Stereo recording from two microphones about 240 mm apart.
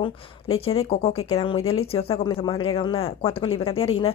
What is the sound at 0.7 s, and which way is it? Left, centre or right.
A woman's voice, left.